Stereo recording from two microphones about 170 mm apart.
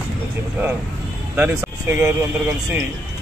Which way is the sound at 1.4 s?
15° right (ahead or behind).